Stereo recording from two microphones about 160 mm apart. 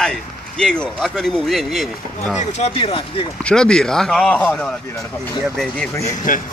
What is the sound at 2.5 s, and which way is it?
Speech, 40° left (ahead or behind).